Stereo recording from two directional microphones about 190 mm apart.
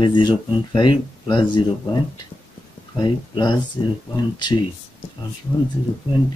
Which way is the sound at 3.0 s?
25° left (ahead or behind).